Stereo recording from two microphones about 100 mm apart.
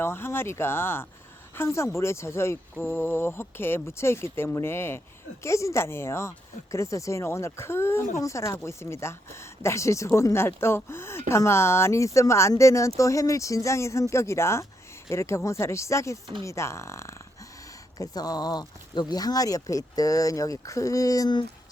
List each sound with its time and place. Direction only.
0.0 s speech: 25° left (ahead or behind)
2.7 s speech: 15° left (ahead or behind)
17.9 s speech: 40° left (ahead or behind)